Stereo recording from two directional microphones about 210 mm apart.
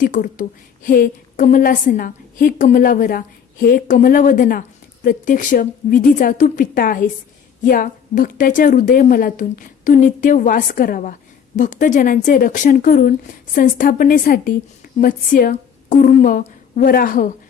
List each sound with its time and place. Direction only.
0.0 s a woman's voice: 40° left (ahead or behind)